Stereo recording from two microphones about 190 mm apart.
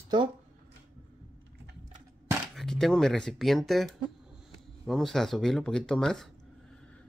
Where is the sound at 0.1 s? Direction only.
25° right (ahead or behind).